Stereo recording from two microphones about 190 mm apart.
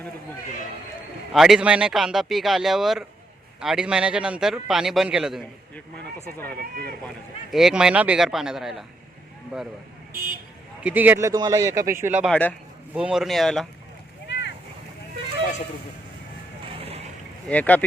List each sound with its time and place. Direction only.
1.3 s a man's voice: centre (ahead or behind)
6.6 s speech: 55° right (ahead or behind)
7.5 s a man's voice: 5° right (ahead or behind)
10.8 s speech: 10° right (ahead or behind)
12.1 s a man's voice: centre (ahead or behind)
14.3 s boat: 65° left (ahead or behind)
16.7 s vehicle: 30° right (ahead or behind)
17.5 s speech: 10° left (ahead or behind)